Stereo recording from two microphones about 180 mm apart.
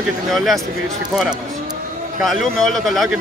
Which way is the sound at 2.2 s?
Centre (ahead or behind).